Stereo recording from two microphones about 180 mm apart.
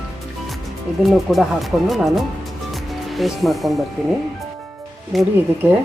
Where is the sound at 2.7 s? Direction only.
Centre (ahead or behind).